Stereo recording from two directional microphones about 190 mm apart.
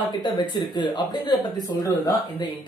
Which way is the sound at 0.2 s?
25° left (ahead or behind).